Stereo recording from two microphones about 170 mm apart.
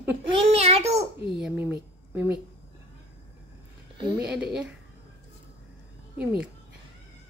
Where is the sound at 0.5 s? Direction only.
35° right (ahead or behind).